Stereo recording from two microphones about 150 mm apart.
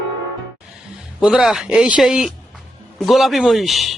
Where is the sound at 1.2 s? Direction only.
5° right (ahead or behind).